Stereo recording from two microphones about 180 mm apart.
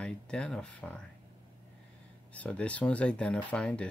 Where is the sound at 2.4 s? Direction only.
5° left (ahead or behind).